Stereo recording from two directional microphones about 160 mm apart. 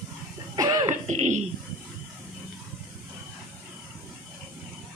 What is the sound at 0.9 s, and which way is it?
Music, 50° right (ahead or behind).